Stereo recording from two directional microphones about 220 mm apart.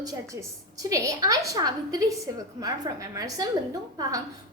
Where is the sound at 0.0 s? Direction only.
15° right (ahead or behind).